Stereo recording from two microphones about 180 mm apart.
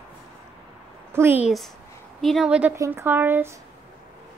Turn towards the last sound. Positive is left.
turn(degrees=-10)  # may be behind; listen again after turning